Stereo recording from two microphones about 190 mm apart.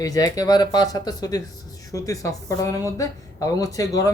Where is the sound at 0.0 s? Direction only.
20° left (ahead or behind).